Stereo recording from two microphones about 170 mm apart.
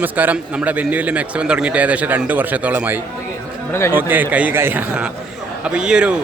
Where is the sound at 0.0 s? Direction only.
10° right (ahead or behind).